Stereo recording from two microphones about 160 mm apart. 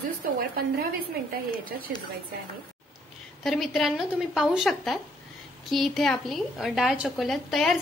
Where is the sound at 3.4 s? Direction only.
Centre (ahead or behind).